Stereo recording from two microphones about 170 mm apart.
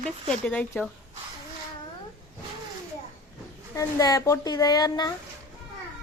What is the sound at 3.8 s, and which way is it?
Speech, 20° left (ahead or behind).